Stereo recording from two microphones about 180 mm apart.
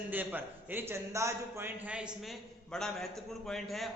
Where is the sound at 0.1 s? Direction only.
10° right (ahead or behind).